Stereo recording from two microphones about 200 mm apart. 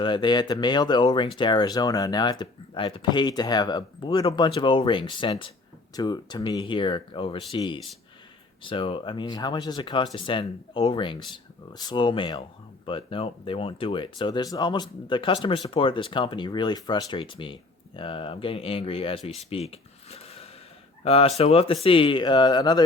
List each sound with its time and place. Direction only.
0.0 s speech: 20° left (ahead or behind)
19.4 s a sound: 30° left (ahead or behind)
21.0 s speech: 30° left (ahead or behind)